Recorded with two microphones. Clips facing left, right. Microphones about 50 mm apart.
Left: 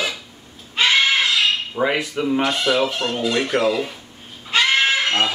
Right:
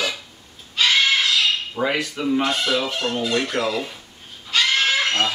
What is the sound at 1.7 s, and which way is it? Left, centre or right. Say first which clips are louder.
Speech: left 2 dB; centre.